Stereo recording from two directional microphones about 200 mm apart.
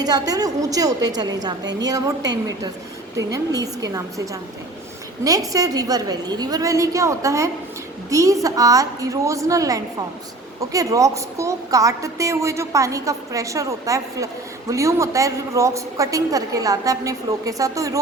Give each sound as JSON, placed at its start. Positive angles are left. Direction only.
{"t": 0.0, "sound": "a woman's voice", "side_deg": -20}
{"t": 3.3, "sound": "a woman's voice", "side_deg": -15}
{"t": 5.2, "sound": "a woman's voice", "side_deg": -15}